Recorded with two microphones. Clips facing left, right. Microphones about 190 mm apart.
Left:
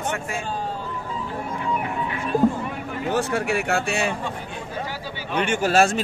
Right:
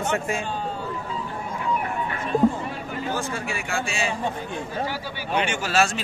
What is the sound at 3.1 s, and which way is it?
Speech, 70° left (ahead or behind).